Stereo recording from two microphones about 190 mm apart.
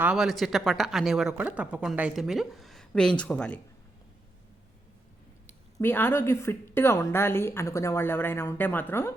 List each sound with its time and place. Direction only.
0.0 s speech: 5° right (ahead or behind)
5.8 s a woman's voice: 10° left (ahead or behind)